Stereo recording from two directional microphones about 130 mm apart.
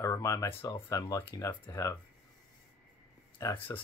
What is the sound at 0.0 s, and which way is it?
Speech, 25° left (ahead or behind).